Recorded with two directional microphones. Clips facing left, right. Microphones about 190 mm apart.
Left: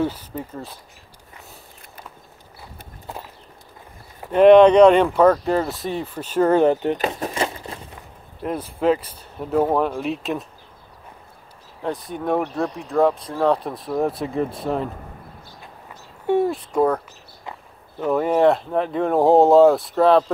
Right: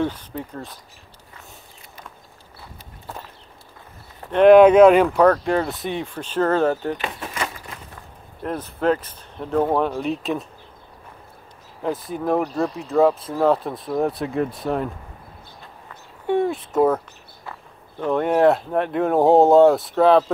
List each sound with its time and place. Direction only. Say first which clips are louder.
0.0 s speech: left 1 dB; 5° left (ahead or behind)
4.3 s speech: even; 5° left (ahead or behind); by 7.0 s 20° left (ahead or behind)
7.0 s crumpling: left 5 dB; 40° left (ahead or behind)
8.4 s speech: left 1 dB; 10° left (ahead or behind)
11.8 s speech: right 1 dB; centre (ahead or behind)
16.3 s speech: left 1 dB; 5° left (ahead or behind)
17.5 s speech: left 1 dB; 5° left (ahead or behind)